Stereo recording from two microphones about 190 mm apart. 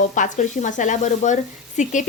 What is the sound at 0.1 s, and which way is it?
Speech, 40° left (ahead or behind).